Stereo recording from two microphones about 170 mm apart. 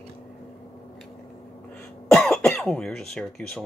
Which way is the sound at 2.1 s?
Centre (ahead or behind).